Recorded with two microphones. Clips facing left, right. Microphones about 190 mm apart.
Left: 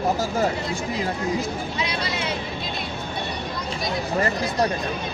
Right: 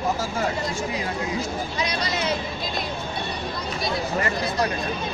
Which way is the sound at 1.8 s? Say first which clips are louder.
Right 2 dB; 40° right (ahead or behind).